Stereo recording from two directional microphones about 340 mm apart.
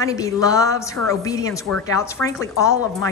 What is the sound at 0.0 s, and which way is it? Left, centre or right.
A woman's voice, centre.